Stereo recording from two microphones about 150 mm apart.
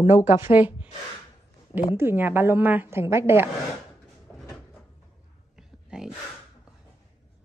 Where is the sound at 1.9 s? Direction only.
15° right (ahead or behind).